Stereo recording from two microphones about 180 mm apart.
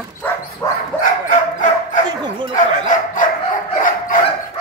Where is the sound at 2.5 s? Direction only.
45° left (ahead or behind).